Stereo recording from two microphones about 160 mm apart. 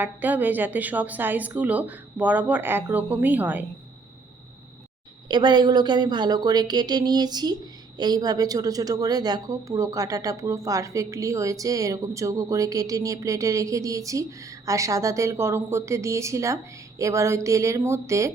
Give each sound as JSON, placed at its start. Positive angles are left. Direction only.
{"t": 0.0, "sound": "a woman's voice", "side_deg": -10}
{"t": 5.3, "sound": "a woman's voice", "side_deg": -30}